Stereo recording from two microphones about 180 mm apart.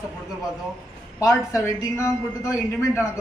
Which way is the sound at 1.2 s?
20° left (ahead or behind).